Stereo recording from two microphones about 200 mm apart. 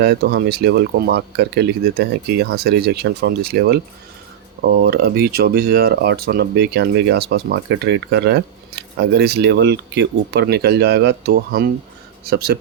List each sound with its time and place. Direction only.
0.0 s speech: 55° right (ahead or behind)